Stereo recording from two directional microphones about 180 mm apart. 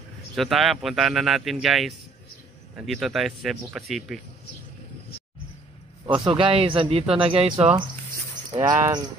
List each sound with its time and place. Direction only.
0.4 s speech: centre (ahead or behind)
6.0 s a man's voice: 30° right (ahead or behind)